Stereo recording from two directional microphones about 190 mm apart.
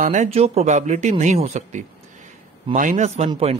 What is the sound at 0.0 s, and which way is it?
Speech, 40° right (ahead or behind).